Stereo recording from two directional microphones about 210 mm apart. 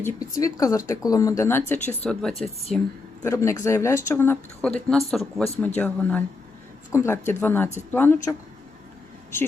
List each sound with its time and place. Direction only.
0.0 s speech: 15° left (ahead or behind); by 2.8 s centre (ahead or behind)
3.2 s speech: 15° left (ahead or behind)